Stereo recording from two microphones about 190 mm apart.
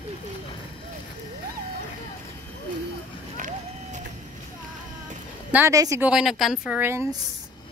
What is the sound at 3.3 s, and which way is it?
Run, 45° right (ahead or behind).